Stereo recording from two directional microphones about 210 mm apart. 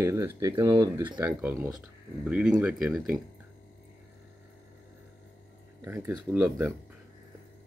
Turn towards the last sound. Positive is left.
turn(degrees=-10)  # may be behind; listen again after turning